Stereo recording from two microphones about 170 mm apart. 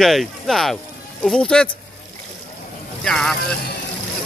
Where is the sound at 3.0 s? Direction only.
5° left (ahead or behind).